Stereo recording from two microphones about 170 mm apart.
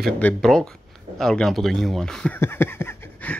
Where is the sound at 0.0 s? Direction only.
5° left (ahead or behind).